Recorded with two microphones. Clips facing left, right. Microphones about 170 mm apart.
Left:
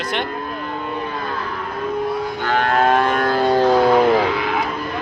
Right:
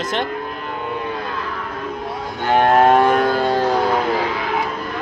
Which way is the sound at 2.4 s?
20° right (ahead or behind).